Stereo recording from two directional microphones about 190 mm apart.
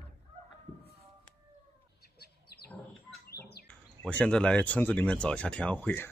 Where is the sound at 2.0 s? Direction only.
55° left (ahead or behind).